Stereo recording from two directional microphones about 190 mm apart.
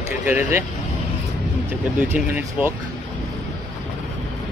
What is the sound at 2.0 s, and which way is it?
Speech, 10° right (ahead or behind).